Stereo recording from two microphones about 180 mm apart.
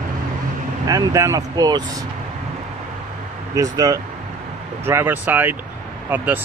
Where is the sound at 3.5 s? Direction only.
20° right (ahead or behind).